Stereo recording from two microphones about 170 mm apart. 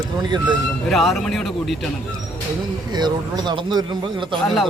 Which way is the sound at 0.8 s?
Centre (ahead or behind).